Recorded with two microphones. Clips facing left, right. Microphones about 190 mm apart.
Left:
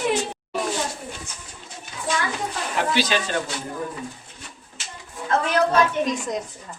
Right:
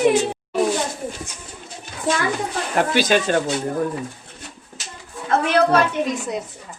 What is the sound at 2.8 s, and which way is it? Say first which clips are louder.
Speech: right 5 dB; 50° right (ahead or behind).